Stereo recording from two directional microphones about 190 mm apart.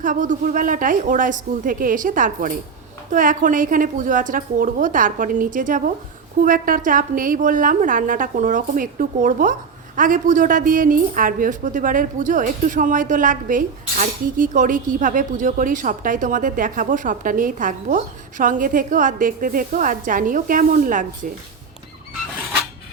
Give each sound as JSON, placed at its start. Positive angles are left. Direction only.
{"t": 0.0, "sound": "a woman's voice", "side_deg": -45}